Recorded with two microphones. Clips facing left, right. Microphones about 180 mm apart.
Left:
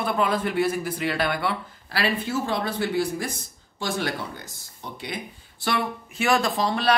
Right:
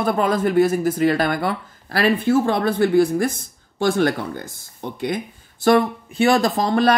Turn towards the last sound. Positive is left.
turn(degrees=-45)  # may be behind; listen again after turning